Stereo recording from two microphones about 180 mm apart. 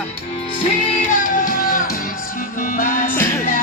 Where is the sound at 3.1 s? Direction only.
10° left (ahead or behind).